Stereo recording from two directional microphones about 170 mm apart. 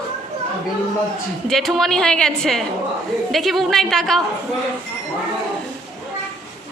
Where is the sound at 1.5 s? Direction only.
Centre (ahead or behind).